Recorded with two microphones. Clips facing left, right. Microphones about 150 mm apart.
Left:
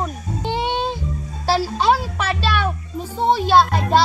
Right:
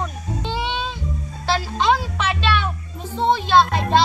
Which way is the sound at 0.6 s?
50° left (ahead or behind).